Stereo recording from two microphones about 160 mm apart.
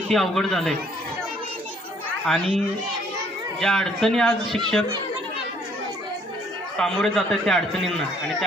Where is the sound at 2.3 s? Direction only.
5° left (ahead or behind).